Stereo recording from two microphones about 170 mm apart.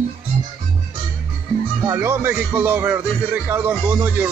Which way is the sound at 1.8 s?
15° right (ahead or behind).